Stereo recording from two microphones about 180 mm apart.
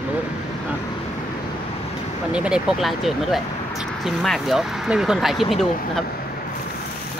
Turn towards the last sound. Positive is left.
turn(degrees=0)  # may be behind; listen again after turning